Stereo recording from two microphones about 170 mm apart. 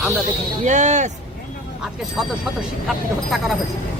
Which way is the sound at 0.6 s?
45° right (ahead or behind).